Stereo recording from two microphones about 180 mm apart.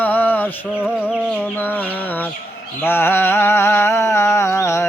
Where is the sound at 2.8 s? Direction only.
10° left (ahead or behind).